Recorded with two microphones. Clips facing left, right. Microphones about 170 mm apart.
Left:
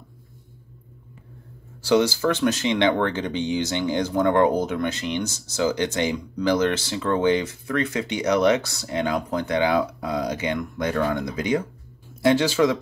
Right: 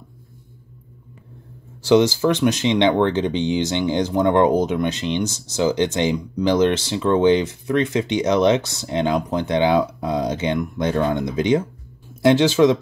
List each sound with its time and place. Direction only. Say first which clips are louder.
1.9 s speech: right 4 dB; 20° right (ahead or behind)